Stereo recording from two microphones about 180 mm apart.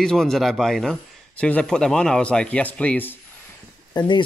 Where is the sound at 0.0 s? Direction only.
5° left (ahead or behind).